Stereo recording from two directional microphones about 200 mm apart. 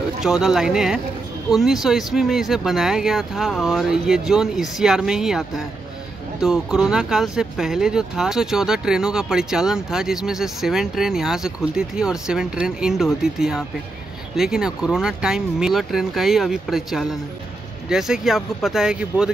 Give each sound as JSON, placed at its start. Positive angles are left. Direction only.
{"t": 0.2, "sound": "speech", "side_deg": 0}